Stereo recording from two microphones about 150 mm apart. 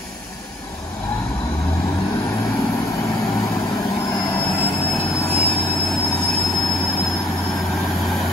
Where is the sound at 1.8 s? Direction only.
20° left (ahead or behind).